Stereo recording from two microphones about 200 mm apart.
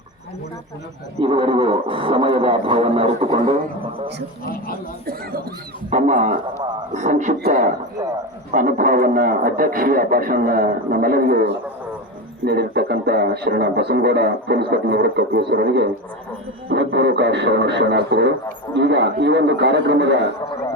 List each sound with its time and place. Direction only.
1.2 s a man's voice: 25° right (ahead or behind)
5.9 s a man's voice: 35° right (ahead or behind); by 20.3 s 60° right (ahead or behind)